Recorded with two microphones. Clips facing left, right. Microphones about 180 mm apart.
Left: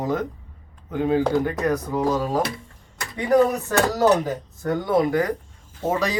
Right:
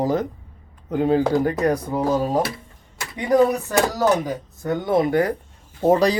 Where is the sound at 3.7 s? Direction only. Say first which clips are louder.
Left 5 dB; 15° right (ahead or behind); by 6.1 s 35° right (ahead or behind).